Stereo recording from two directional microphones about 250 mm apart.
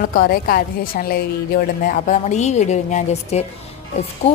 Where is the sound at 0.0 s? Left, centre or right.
Left.